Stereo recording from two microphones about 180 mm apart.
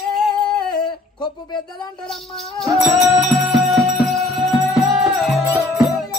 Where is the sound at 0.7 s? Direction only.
25° left (ahead or behind).